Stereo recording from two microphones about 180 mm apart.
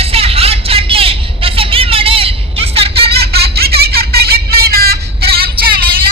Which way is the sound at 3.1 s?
60° right (ahead or behind).